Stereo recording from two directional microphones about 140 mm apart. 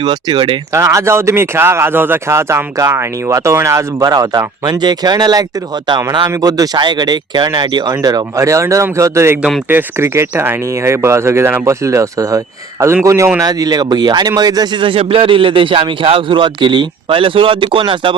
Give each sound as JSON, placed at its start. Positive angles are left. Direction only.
{"t": 0.0, "sound": "a man's voice", "side_deg": -30}
{"t": 0.7, "sound": "a man's voice", "side_deg": -20}